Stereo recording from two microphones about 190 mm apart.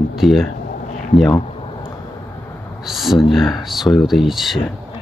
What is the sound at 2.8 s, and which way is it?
Speech, centre (ahead or behind).